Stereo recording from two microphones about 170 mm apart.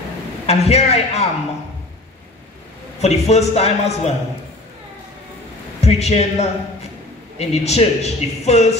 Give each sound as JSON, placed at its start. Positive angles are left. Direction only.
{"t": 0.5, "sound": "a man's voice", "side_deg": 40}
{"t": 3.0, "sound": "a man's voice", "side_deg": 40}
{"t": 5.8, "sound": "a man's voice", "side_deg": 40}